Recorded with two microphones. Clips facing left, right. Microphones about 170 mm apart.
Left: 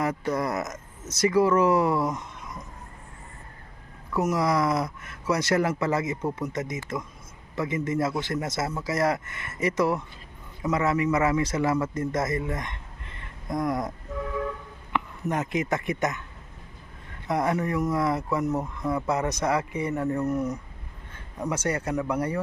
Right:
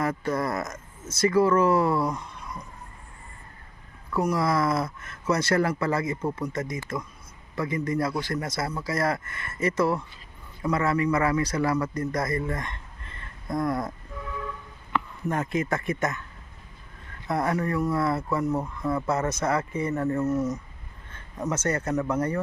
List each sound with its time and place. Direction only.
0.3 s speech: 20° left (ahead or behind)
4.2 s a man's voice: 20° left (ahead or behind)
14.9 s speech: 20° left (ahead or behind)
17.2 s speech: 15° left (ahead or behind)